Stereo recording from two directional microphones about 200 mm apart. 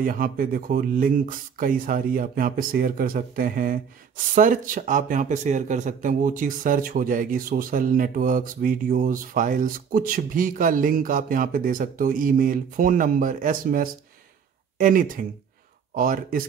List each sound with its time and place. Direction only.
0.0 s a man's voice: 45° right (ahead or behind)